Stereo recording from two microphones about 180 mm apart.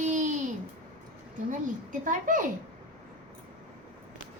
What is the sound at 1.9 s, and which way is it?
Speech, 45° right (ahead or behind).